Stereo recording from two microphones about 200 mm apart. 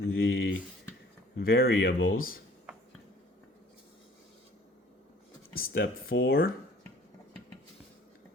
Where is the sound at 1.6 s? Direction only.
80° left.